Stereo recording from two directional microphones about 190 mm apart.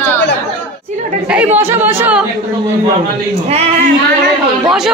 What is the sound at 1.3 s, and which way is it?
Speech, 10° right (ahead or behind).